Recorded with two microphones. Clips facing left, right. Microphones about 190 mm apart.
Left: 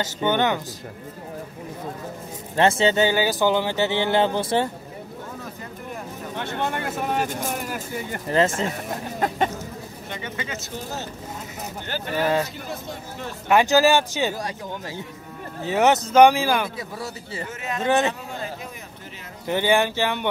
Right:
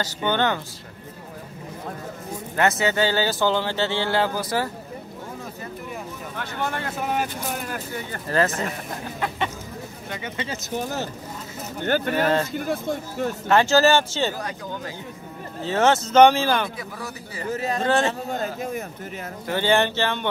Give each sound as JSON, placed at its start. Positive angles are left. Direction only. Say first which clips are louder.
{"t": 0.0, "sound": "speech", "louder": "left 1 dB", "side_deg": 20}
{"t": 2.5, "sound": "speech", "louder": "left 3 dB", "side_deg": 25}
{"t": 6.3, "sound": "speech", "louder": "left 2 dB", "side_deg": 25}
{"t": 8.1, "sound": "speech", "louder": "left 2 dB", "side_deg": 20}
{"t": 9.2, "sound": "chicken", "louder": "left 4 dB", "side_deg": 40}
{"t": 10.3, "sound": "speech", "louder": "right 2 dB", "side_deg": -25}
{"t": 11.8, "sound": "speech", "louder": "right 4 dB", "side_deg": -55}
{"t": 13.5, "sound": "speech", "louder": "left 1 dB", "side_deg": 10}
{"t": 15.6, "sound": "speech", "louder": "left 1 dB", "side_deg": 15}
{"t": 17.5, "sound": "a man's voice", "louder": "right 7 dB", "side_deg": -35}
{"t": 17.8, "sound": "speech", "louder": "left 1 dB", "side_deg": 15}
{"t": 18.3, "sound": "speech", "louder": "right 6 dB", "side_deg": -45}
{"t": 19.4, "sound": "speech", "louder": "left 1 dB", "side_deg": 15}